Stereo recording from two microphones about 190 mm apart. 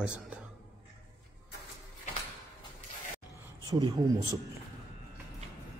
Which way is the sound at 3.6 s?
20° right (ahead or behind).